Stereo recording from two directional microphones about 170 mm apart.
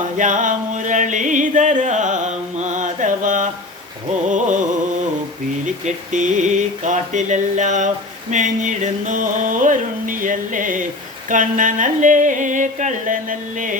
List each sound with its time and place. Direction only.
0.2 s music: 50° right (ahead or behind)
5.6 s music: 45° right (ahead or behind)